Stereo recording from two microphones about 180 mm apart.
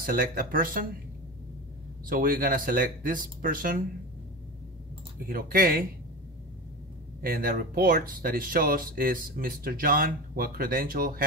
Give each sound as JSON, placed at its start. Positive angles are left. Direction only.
{"t": 0.0, "sound": "speech", "side_deg": -55}
{"t": 2.0, "sound": "speech", "side_deg": -55}
{"t": 5.2, "sound": "speech", "side_deg": -55}
{"t": 7.2, "sound": "speech", "side_deg": -55}